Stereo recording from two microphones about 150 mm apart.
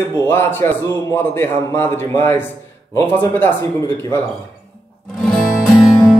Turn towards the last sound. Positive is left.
turn(degrees=0)  # may be behind; listen again after turning